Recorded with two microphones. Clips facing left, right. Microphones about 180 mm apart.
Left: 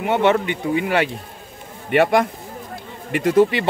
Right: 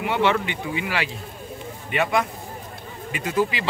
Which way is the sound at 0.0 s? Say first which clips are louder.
Left 4 dB; 45° left (ahead or behind).